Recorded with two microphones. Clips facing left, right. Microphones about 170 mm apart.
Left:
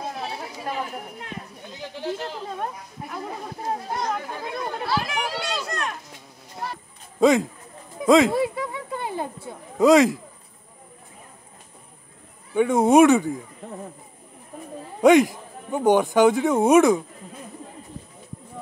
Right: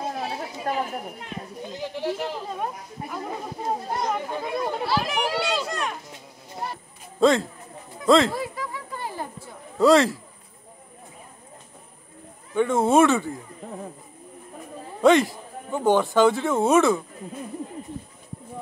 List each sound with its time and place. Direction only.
2.0 s speech: 10° right (ahead or behind)
3.7 s speech: 10° right (ahead or behind)
7.2 s a man's voice: 15° left (ahead or behind)
8.3 s a sound: 20° left (ahead or behind)
9.8 s a man's voice: 15° left (ahead or behind)
12.5 s a man's voice: 15° left (ahead or behind)
15.0 s a man's voice: 15° left (ahead or behind)